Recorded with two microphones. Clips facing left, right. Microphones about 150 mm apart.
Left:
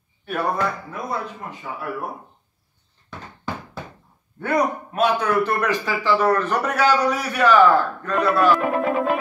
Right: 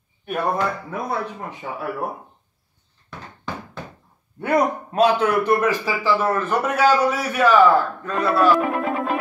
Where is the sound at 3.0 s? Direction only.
5° left (ahead or behind).